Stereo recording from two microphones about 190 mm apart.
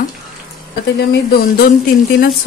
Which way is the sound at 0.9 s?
60° left (ahead or behind).